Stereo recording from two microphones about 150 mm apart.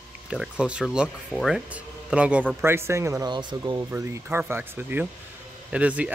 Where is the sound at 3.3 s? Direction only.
30° right (ahead or behind).